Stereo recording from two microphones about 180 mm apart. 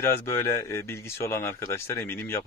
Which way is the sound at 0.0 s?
15° left (ahead or behind).